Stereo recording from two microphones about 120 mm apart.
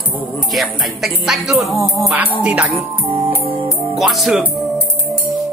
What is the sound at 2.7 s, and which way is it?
Music, 55° right (ahead or behind).